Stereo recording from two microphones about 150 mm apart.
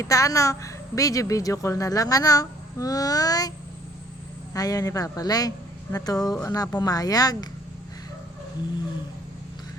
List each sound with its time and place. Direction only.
0.0 s a woman's voice: 20° left (ahead or behind)
4.5 s a woman's voice: 25° left (ahead or behind)